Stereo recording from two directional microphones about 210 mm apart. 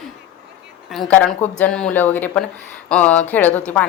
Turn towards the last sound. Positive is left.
turn(degrees=5)  # may be behind; listen again after turning